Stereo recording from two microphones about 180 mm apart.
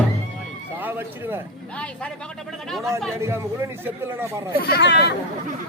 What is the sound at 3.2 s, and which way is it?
Speech, 15° right (ahead or behind).